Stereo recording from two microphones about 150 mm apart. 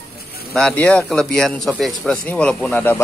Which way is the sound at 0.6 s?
5° left (ahead or behind).